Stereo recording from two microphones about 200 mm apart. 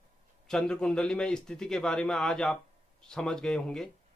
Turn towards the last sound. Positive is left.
turn(degrees=5)  # may be behind; listen again after turning